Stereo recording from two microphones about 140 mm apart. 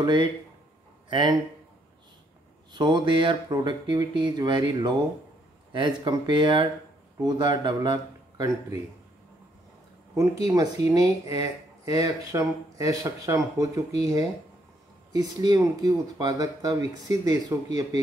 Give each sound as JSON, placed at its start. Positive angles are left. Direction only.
{"t": 0.0, "sound": "speech", "side_deg": -35}
{"t": 2.7, "sound": "speech", "side_deg": -30}
{"t": 10.1, "sound": "speech", "side_deg": -25}